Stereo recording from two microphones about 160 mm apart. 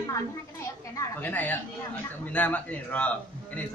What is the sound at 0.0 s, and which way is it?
A man's voice, 20° left (ahead or behind).